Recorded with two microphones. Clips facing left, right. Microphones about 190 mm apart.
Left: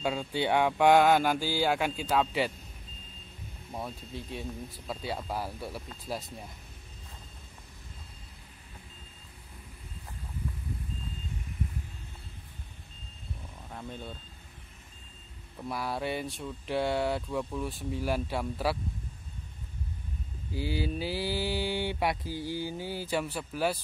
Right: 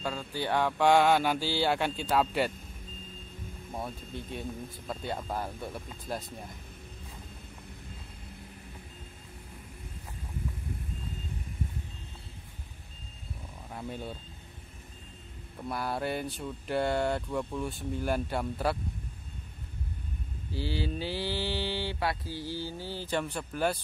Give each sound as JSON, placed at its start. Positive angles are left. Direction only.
{"t": 0.0, "sound": "mantra", "side_deg": 15}
{"t": 1.6, "sound": "speech", "side_deg": 10}
{"t": 3.7, "sound": "speech", "side_deg": 0}
{"t": 13.7, "sound": "speech", "side_deg": -10}
{"t": 15.7, "sound": "speech", "side_deg": 0}
{"t": 20.5, "sound": "mantra", "side_deg": 10}